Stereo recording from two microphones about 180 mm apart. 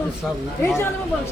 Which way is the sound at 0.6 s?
15° left (ahead or behind).